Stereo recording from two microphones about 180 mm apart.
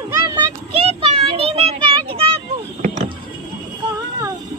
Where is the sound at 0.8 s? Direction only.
35° right (ahead or behind).